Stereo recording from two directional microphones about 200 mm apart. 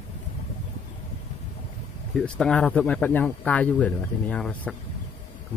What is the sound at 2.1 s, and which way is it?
Speech, 5° left (ahead or behind).